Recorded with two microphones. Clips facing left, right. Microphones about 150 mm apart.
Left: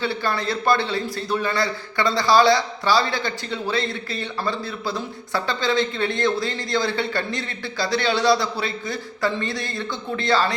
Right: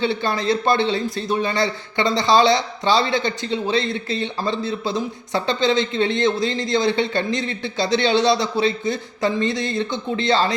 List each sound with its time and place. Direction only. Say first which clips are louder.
0.0 s a man's voice: right 3 dB; 20° right (ahead or behind)